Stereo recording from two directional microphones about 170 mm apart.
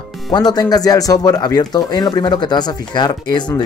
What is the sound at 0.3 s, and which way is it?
Speech, 25° left (ahead or behind).